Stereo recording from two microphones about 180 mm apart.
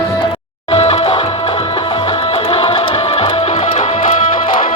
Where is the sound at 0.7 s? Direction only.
35° left (ahead or behind).